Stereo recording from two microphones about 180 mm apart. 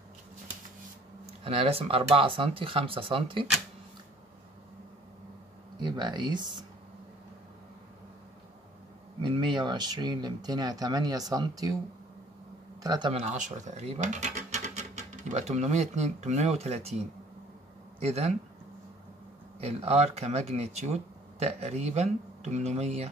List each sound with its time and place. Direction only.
1.2 s speech: 30° right (ahead or behind)
5.8 s speech: 25° right (ahead or behind)
9.2 s speech: 25° right (ahead or behind)
12.8 s speech: 20° right (ahead or behind)
13.1 s speech: 40° right (ahead or behind)
18.0 s speech: 35° right (ahead or behind)
19.6 s speech: 35° right (ahead or behind)